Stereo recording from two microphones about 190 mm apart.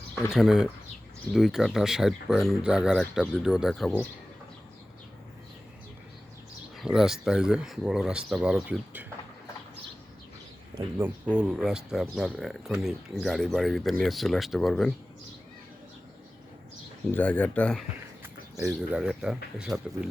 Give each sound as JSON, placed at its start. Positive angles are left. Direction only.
{"t": 0.3, "sound": "speech", "side_deg": 0}
{"t": 6.8, "sound": "speech", "side_deg": 0}
{"t": 10.8, "sound": "speech", "side_deg": -10}
{"t": 17.1, "sound": "speech", "side_deg": 10}
{"t": 18.2, "sound": "a sound", "side_deg": -15}
{"t": 18.7, "sound": "speech", "side_deg": -5}